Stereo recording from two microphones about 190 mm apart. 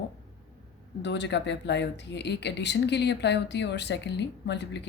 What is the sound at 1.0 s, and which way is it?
Speech, 65° left (ahead or behind).